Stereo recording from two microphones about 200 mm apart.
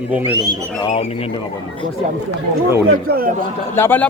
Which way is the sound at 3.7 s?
10° left (ahead or behind).